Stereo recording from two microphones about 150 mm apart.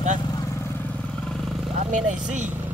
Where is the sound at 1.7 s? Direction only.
55° right (ahead or behind).